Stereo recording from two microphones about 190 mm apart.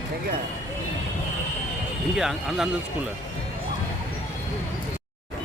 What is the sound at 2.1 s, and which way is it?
Speech, 5° right (ahead or behind).